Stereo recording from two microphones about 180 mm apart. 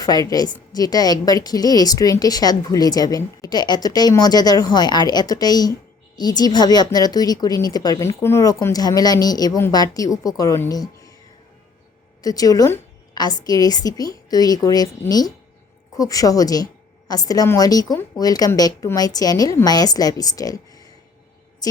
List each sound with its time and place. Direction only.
0.0 s a woman's voice: 20° left (ahead or behind)
12.2 s a woman's voice: 20° left (ahead or behind)